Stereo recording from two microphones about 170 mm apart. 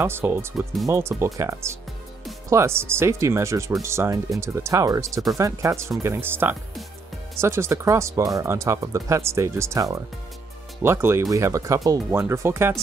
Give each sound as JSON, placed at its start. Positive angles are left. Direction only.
{"t": 0.0, "sound": "speech", "side_deg": -15}